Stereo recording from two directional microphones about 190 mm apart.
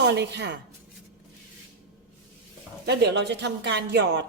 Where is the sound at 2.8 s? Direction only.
65° right (ahead or behind).